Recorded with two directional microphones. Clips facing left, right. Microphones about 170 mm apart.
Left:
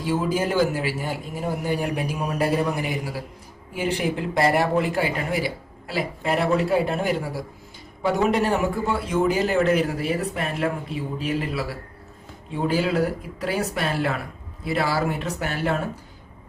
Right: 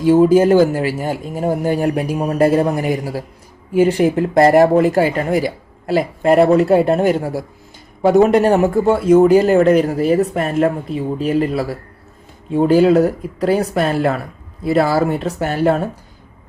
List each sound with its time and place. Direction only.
0.0 s speech: 45° right (ahead or behind)